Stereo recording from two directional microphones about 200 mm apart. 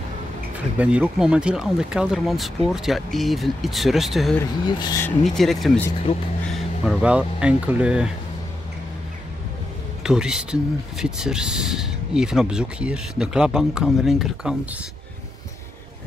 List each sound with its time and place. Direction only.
0.7 s speech: 5° right (ahead or behind)
4.4 s speech: 20° left (ahead or behind)
5.0 s speech: centre (ahead or behind)
10.0 s speech: 5° right (ahead or behind)